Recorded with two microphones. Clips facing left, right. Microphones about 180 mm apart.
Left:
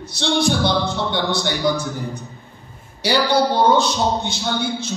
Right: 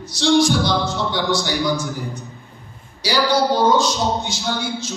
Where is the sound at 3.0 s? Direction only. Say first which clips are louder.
Left 1 dB; 60° left (ahead or behind).